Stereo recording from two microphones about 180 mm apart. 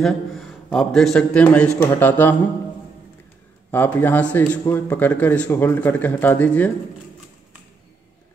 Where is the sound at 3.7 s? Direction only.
10° left (ahead or behind).